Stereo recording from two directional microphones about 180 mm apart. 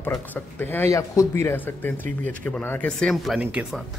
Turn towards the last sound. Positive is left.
turn(degrees=-5)  # may be behind; listen again after turning